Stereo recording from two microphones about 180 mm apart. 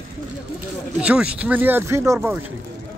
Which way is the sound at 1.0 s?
5° right (ahead or behind).